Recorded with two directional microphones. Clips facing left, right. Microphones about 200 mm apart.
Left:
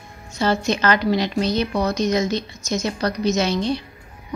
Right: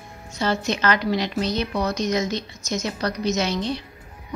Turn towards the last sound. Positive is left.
turn(degrees=30)  # may be behind; listen again after turning